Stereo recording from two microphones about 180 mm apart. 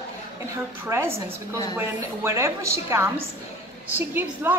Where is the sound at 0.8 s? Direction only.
15° right (ahead or behind).